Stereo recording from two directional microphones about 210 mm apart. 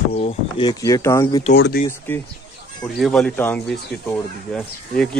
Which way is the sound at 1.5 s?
55° left (ahead or behind).